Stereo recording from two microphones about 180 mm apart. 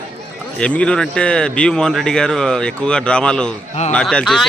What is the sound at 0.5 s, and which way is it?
A man's voice, 5° left (ahead or behind).